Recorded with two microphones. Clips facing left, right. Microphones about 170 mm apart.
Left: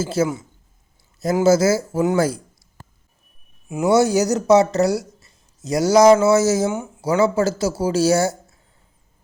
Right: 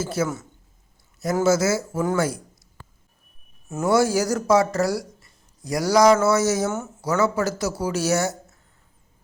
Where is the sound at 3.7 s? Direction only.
15° left (ahead or behind).